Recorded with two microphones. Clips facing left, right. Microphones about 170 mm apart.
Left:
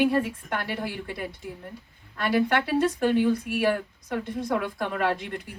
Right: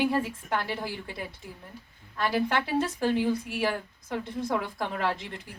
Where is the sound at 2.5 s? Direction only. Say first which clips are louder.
Left 4 dB; 60° left (ahead or behind).